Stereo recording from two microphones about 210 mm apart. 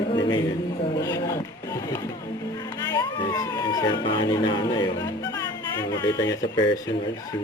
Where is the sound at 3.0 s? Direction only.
20° left (ahead or behind).